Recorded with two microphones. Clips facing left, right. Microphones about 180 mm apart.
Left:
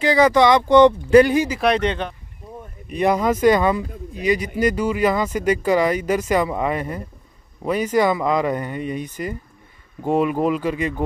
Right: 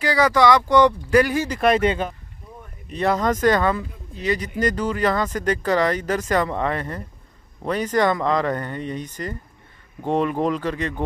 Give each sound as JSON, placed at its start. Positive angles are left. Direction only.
{"t": 0.0, "sound": "speech", "side_deg": 20}
{"t": 1.5, "sound": "speech", "side_deg": 0}
{"t": 2.9, "sound": "speech", "side_deg": 15}